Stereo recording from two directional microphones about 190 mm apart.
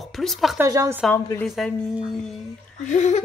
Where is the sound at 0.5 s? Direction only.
15° right (ahead or behind).